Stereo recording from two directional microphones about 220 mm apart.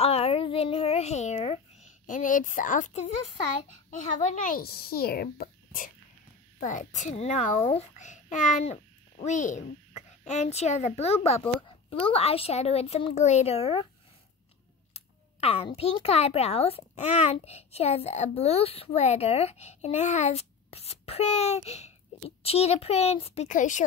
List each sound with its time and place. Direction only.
0.0 s a sound: 25° left (ahead or behind)
4.4 s a child's voice: 40° left (ahead or behind)
11.4 s a woman's voice: 5° left (ahead or behind)
12.1 s a child's voice: 25° left (ahead or behind)
15.0 s a child's voice: 25° left (ahead or behind)